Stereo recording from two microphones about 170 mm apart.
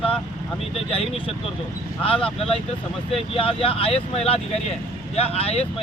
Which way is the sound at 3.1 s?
35° left (ahead or behind).